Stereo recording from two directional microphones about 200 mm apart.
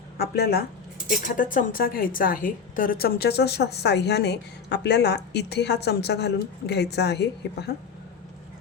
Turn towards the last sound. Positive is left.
turn(degrees=55)  # may be behind; listen again after turning